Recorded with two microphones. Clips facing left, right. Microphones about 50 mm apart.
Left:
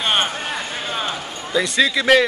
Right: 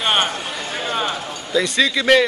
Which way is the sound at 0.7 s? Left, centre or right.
Centre.